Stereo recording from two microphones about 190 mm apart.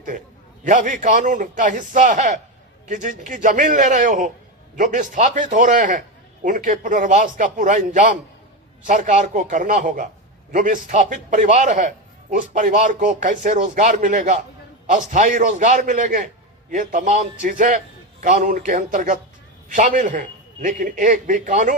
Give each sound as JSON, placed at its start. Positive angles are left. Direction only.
{"t": 0.6, "sound": "a man's voice", "side_deg": -40}